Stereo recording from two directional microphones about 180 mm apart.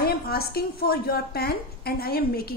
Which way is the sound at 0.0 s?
60° left (ahead or behind).